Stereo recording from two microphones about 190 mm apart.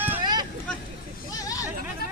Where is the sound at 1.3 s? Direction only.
20° left (ahead or behind).